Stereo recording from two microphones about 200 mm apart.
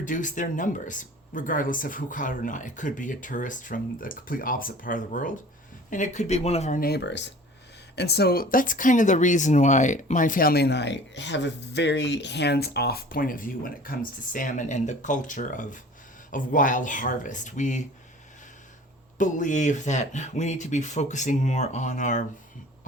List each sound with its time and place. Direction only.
0.0 s speech: 40° left (ahead or behind)
6.7 s speech: 50° left (ahead or behind)
19.2 s speech: 40° left (ahead or behind)